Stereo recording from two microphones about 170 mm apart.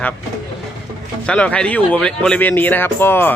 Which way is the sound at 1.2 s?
5° left (ahead or behind).